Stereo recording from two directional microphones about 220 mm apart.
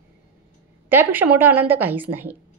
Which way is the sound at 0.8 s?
10° right (ahead or behind).